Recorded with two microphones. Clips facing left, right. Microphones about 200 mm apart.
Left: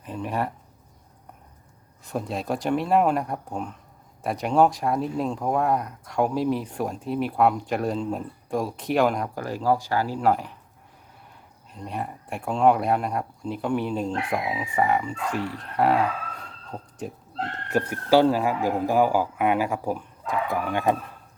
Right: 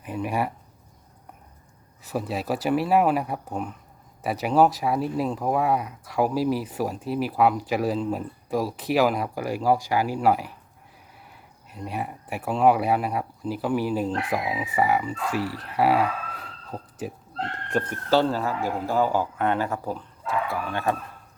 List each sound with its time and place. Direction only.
0.0 s speech: 10° right (ahead or behind)
2.0 s speech: 5° right (ahead or behind)
11.7 s speech: 5° right (ahead or behind)
17.7 s speech: 5° left (ahead or behind)